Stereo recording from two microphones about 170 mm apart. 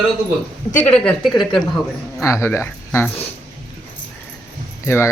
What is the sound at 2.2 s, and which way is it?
Speech, 15° left (ahead or behind).